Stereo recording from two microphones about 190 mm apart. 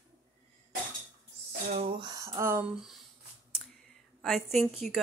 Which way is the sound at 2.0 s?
20° right (ahead or behind).